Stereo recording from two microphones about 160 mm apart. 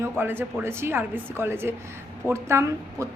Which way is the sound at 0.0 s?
15° right (ahead or behind).